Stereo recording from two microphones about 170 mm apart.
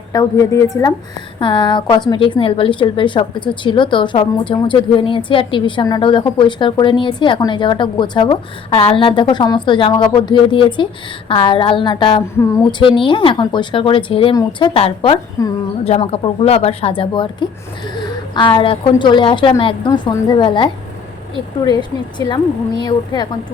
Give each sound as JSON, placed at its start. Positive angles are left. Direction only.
{"t": 0.1, "sound": "a woman's voice", "side_deg": 20}
{"t": 15.8, "sound": "a woman's voice", "side_deg": 35}